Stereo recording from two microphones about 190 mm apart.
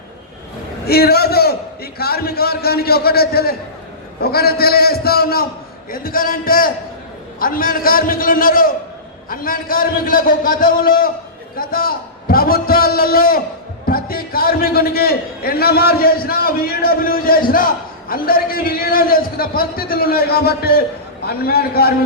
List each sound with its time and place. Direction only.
0.9 s a man's voice: 55° left (ahead or behind)